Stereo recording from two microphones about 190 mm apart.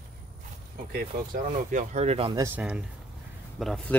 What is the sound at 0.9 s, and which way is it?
Speech, 45° right (ahead or behind).